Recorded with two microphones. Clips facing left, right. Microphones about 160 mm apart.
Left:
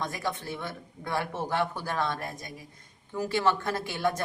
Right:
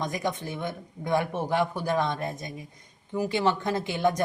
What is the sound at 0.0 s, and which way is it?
Speech, 15° right (ahead or behind).